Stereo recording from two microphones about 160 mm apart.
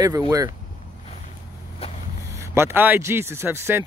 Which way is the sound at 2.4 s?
15° right (ahead or behind).